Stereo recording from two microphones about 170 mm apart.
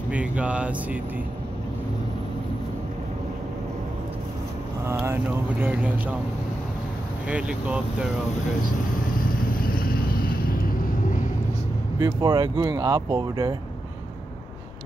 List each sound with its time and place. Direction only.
0.1 s speech: 5° right (ahead or behind)
5.0 s speech: 15° right (ahead or behind)
7.2 s speech: 5° right (ahead or behind)
9.6 s vehicle: 60° left (ahead or behind)
12.0 s speech: 20° right (ahead or behind)